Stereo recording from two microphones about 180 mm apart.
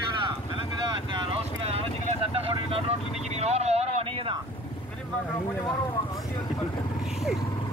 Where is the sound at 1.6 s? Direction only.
35° right (ahead or behind).